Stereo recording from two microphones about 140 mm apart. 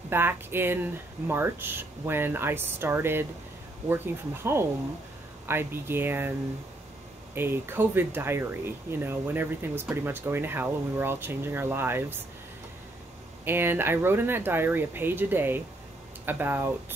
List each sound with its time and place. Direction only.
0.1 s speech: 15° right (ahead or behind)
7.3 s speech: 15° right (ahead or behind)
13.5 s speech: 15° right (ahead or behind)